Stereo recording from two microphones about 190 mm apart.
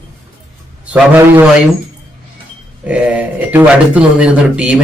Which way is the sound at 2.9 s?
5° right (ahead or behind).